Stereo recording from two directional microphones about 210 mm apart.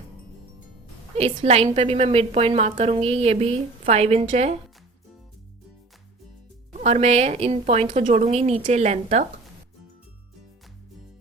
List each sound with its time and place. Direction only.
1.1 s a woman's voice: 30° right (ahead or behind)
6.7 s a woman's voice: 30° right (ahead or behind)